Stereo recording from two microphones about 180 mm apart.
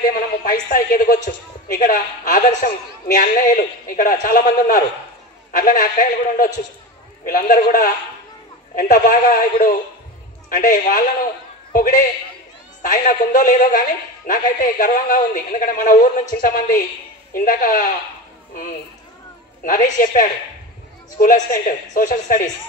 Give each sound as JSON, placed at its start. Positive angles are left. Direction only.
{"t": 0.1, "sound": "a woman's voice", "side_deg": 50}
{"t": 12.8, "sound": "a woman's voice", "side_deg": 45}